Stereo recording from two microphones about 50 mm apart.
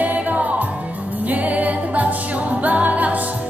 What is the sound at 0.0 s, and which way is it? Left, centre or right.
Music, right.